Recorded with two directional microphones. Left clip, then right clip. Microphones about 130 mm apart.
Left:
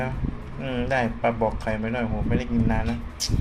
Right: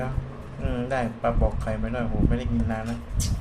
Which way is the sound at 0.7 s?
5° left (ahead or behind).